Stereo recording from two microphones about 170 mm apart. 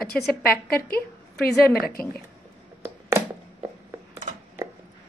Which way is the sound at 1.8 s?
65° left (ahead or behind).